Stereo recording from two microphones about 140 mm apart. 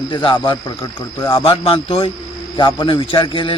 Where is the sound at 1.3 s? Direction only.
40° left (ahead or behind).